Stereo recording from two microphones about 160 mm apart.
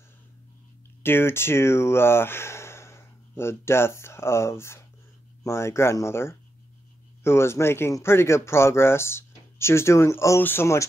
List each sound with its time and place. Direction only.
1.0 s speech: 15° left (ahead or behind)